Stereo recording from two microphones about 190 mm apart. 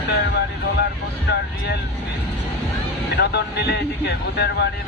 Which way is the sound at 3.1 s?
60° left (ahead or behind).